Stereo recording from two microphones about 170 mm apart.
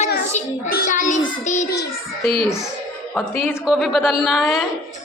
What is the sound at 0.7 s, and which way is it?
A child's voice, 55° left (ahead or behind).